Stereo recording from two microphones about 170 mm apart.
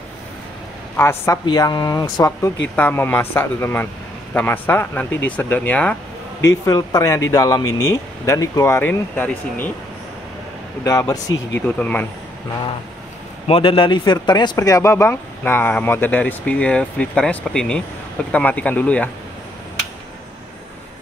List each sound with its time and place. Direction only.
0.9 s speech: 15° left (ahead or behind)
6.4 s speech: 20° left (ahead or behind)
10.8 s speech: 20° left (ahead or behind)
13.5 s speech: 30° left (ahead or behind); by 19.0 s 10° left (ahead or behind)